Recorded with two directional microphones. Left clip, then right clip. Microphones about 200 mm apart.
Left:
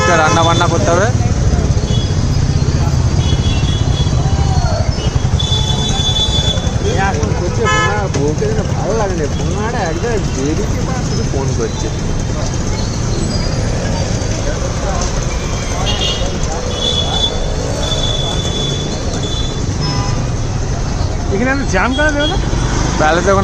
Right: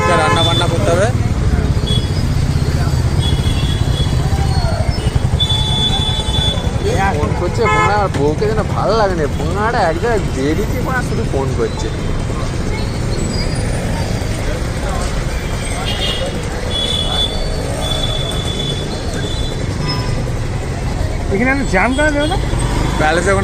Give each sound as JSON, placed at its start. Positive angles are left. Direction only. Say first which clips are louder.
{"t": 0.1, "sound": "vehicle", "louder": "left 2 dB", "side_deg": 30}
{"t": 7.6, "sound": "vehicle", "louder": "right 1 dB", "side_deg": 5}
{"t": 9.6, "sound": "speech", "louder": "right 5 dB", "side_deg": 0}
{"t": 21.4, "sound": "speech", "louder": "right 1 dB", "side_deg": -15}
{"t": 23.0, "sound": "speech", "louder": "left 2 dB", "side_deg": 15}